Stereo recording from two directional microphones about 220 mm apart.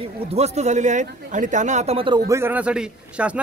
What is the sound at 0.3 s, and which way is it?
A man's voice, 30° right (ahead or behind).